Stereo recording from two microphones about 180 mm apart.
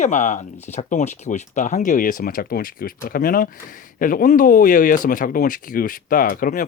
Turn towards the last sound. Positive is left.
turn(degrees=50)  # may be behind; listen again after turning